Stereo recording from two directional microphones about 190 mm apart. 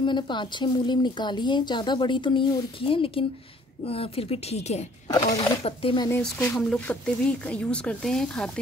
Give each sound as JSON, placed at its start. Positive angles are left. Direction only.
{"t": 0.0, "sound": "a woman's voice", "side_deg": 25}
{"t": 5.0, "sound": "a woman's voice", "side_deg": 20}
{"t": 5.6, "sound": "speech", "side_deg": 30}
{"t": 6.3, "sound": "speech", "side_deg": 0}